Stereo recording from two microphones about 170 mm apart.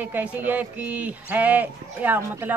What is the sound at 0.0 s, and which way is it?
A woman's voice, 10° right (ahead or behind).